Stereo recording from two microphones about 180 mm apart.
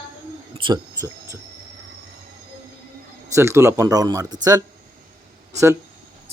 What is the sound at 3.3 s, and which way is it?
Speech, 15° right (ahead or behind).